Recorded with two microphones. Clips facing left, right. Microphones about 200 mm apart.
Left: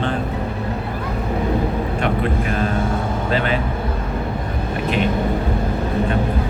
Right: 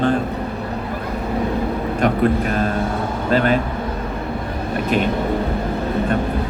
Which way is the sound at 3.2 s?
45° right (ahead or behind).